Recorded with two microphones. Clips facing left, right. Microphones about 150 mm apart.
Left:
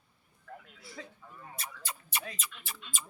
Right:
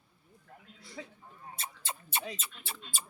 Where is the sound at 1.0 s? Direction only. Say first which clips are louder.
Right 2 dB; 10° right (ahead or behind).